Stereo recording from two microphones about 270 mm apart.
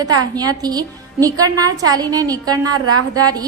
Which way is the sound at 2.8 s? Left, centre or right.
Right.